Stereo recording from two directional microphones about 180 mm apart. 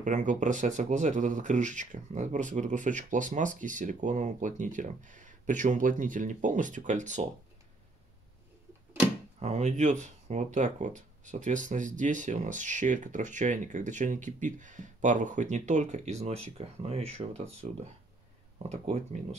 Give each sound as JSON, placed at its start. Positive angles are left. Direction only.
{"t": 0.0, "sound": "speech", "side_deg": -45}
{"t": 9.4, "sound": "speech", "side_deg": -40}